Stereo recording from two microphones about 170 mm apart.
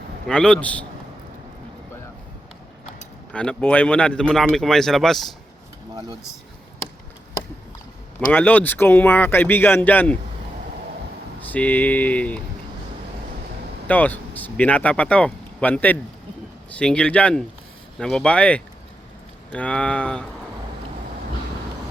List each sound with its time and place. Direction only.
0.3 s speech: 5° left (ahead or behind)
3.3 s speech: 5° left (ahead or behind)
5.9 s a sound: 20° right (ahead or behind)
8.3 s speech: 10° left (ahead or behind)
11.4 s speech: 10° left (ahead or behind)
13.8 s speech: 10° left (ahead or behind)